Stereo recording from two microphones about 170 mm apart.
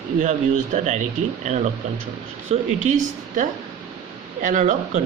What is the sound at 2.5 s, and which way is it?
Speech, 35° right (ahead or behind).